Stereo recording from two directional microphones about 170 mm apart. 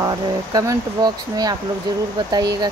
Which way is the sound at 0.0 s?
20° right (ahead or behind).